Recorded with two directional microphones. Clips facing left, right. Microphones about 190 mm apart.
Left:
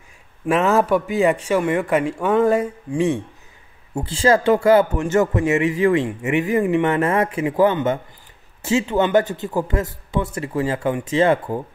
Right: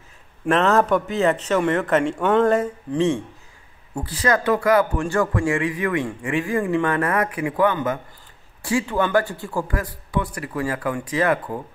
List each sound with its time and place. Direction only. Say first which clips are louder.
0.5 s a man's voice: left 1 dB; 10° left (ahead or behind)
3.9 s speech: left 5 dB; 25° left (ahead or behind)